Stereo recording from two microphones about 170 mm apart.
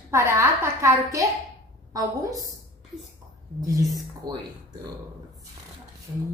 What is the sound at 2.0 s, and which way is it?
Speech, 20° right (ahead or behind).